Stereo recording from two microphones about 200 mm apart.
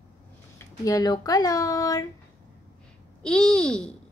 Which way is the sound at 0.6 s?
20° left (ahead or behind).